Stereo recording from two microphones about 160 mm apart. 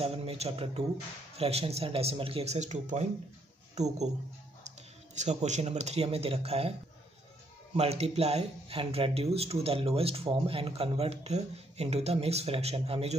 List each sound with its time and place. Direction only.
0.0 s speech: 40° right (ahead or behind)
7.7 s speech: 40° right (ahead or behind)